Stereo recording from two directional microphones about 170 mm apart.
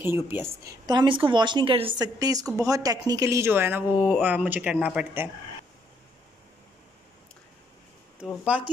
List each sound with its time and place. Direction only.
0.0 s speech: 15° right (ahead or behind)
8.2 s speech: 10° right (ahead or behind)